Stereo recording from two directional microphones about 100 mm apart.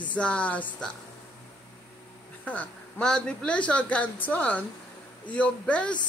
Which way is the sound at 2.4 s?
10° left (ahead or behind).